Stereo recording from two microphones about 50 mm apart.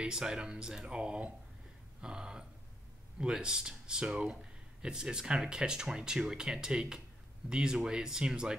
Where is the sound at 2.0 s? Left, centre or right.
Centre.